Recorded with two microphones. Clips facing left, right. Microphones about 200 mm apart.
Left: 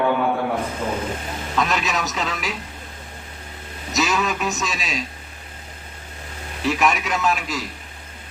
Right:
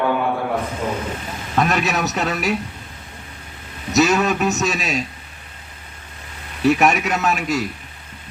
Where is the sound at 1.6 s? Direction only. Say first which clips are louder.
Right 4 dB; 60° right (ahead or behind).